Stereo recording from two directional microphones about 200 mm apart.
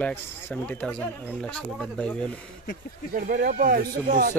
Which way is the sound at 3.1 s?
45° right (ahead or behind).